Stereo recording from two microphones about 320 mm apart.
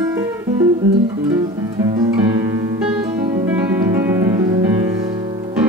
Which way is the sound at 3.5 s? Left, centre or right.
Centre.